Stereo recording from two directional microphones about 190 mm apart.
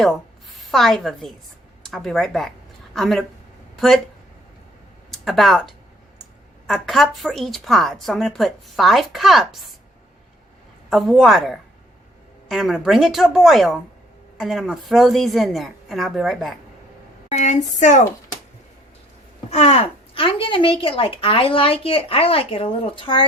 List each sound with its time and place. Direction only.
0.5 s a woman's voice: centre (ahead or behind)
5.1 s a woman's voice: centre (ahead or behind)
10.8 s a woman's voice: centre (ahead or behind)
17.3 s a woman's voice: 40° left (ahead or behind)
19.5 s a woman's voice: 35° left (ahead or behind)